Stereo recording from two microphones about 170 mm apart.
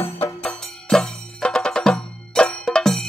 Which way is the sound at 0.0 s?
10° left (ahead or behind).